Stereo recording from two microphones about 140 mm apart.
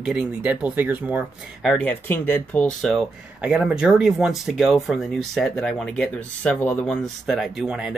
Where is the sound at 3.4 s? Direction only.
10° right (ahead or behind).